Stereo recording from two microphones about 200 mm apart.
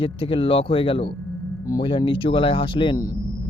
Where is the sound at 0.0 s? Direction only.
25° left (ahead or behind).